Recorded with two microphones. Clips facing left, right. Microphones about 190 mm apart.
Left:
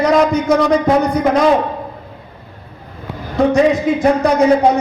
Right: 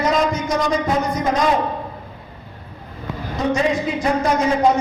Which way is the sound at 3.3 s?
60° left (ahead or behind).